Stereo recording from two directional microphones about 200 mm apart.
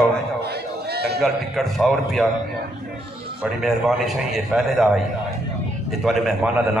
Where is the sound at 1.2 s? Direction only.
Centre (ahead or behind).